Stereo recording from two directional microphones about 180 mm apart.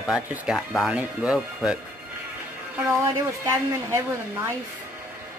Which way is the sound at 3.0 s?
15° right (ahead or behind).